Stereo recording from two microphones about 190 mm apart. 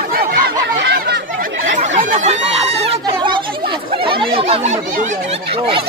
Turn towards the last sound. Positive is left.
turn(degrees=-35)  # may be behind; listen again after turning